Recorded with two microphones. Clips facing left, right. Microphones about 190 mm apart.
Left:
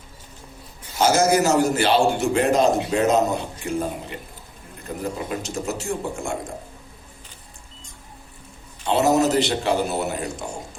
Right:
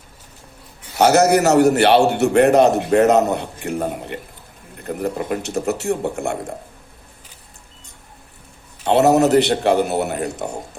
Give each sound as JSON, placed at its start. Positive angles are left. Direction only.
{"t": 0.9, "sound": "a man's voice", "side_deg": -65}
{"t": 8.8, "sound": "a man's voice", "side_deg": -60}